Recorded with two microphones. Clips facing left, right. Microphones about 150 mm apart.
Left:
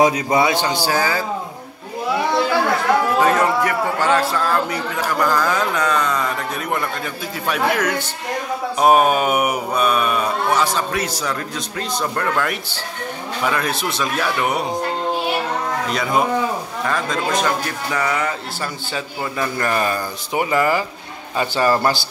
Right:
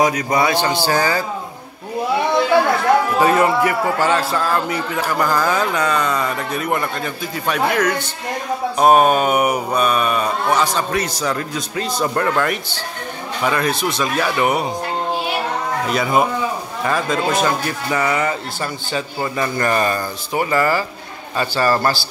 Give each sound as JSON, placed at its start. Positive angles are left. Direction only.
{"t": 0.0, "sound": "a man's voice", "side_deg": 25}
{"t": 3.2, "sound": "mantra", "side_deg": -5}
{"t": 15.9, "sound": "mantra", "side_deg": -5}
{"t": 20.3, "sound": "a man's voice", "side_deg": 15}